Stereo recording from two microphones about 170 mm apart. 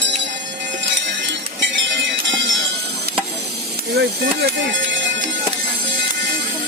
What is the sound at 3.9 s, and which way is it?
Music, 70° right (ahead or behind).